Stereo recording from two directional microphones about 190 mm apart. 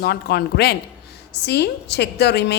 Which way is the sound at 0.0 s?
55° left (ahead or behind).